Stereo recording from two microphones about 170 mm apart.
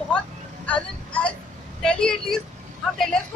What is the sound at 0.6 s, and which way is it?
Vehicle, 5° left (ahead or behind).